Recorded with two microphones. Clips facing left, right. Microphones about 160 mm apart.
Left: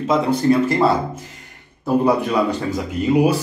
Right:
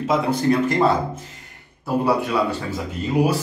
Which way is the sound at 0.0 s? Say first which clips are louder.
Left 2 dB; 5° right (ahead or behind).